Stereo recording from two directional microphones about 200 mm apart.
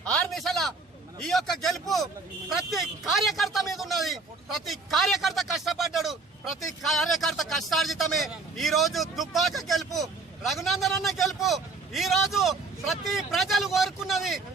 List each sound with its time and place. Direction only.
0.0 s a man's voice: 5° left (ahead or behind)